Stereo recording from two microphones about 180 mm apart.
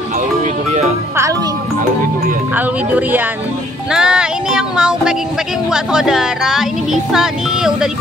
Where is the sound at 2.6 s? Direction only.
10° right (ahead or behind).